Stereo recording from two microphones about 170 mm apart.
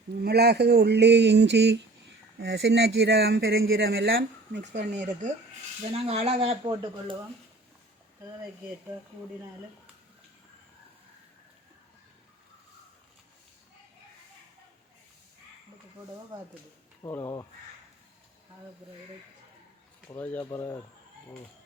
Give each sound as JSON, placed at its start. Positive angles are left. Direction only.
{"t": 0.3, "sound": "a sound", "side_deg": -70}
{"t": 2.4, "sound": "speech", "side_deg": -90}
{"t": 4.9, "sound": "speech", "side_deg": -45}
{"t": 17.1, "sound": "speech", "side_deg": 15}
{"t": 20.1, "sound": "speech", "side_deg": 10}